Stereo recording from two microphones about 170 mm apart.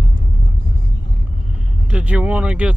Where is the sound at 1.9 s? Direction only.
5° right (ahead or behind).